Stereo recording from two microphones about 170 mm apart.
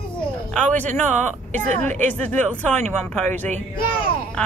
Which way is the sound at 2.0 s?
10° left (ahead or behind).